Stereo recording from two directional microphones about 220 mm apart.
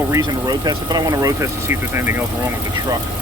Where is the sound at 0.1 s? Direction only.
20° right (ahead or behind).